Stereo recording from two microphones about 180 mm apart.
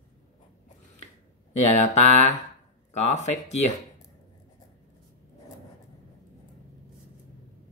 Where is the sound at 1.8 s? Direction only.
40° left (ahead or behind).